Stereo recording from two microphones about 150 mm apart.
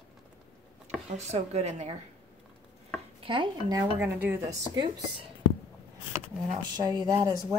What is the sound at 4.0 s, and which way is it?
Speech, 15° right (ahead or behind).